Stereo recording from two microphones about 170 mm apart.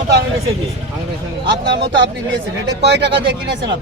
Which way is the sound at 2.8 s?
85° right.